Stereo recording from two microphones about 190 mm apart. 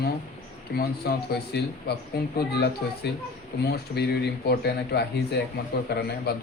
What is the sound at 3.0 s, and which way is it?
A man's voice, 60° left (ahead or behind).